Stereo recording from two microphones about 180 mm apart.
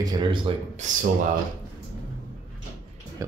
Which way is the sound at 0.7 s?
45° right (ahead or behind).